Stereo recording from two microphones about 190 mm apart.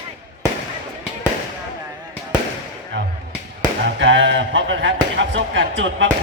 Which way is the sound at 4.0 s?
75° right (ahead or behind).